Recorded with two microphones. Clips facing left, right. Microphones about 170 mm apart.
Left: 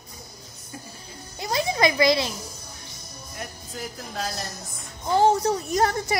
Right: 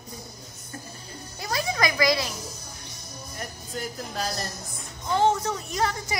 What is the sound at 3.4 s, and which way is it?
Speech, centre (ahead or behind).